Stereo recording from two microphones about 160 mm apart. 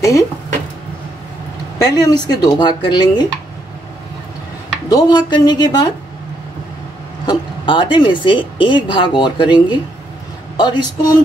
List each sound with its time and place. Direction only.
1.8 s speech: 25° left (ahead or behind)
4.8 s speech: 25° left (ahead or behind)
7.2 s speech: 30° left (ahead or behind)